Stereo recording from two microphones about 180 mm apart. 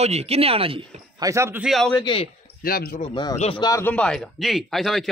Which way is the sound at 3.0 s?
25° left (ahead or behind).